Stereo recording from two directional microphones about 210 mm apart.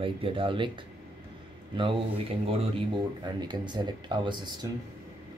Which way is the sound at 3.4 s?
20° right (ahead or behind).